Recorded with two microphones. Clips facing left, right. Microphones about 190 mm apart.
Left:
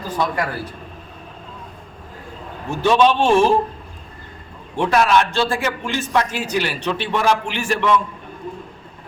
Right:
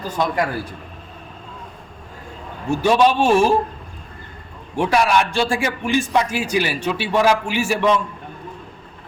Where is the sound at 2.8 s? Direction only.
10° right (ahead or behind).